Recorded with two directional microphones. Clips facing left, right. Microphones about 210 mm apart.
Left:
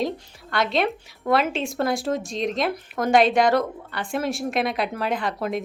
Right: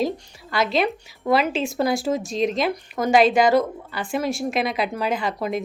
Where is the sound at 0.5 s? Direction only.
Centre (ahead or behind).